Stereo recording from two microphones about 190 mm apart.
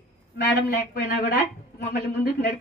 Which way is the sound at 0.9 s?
60° left (ahead or behind).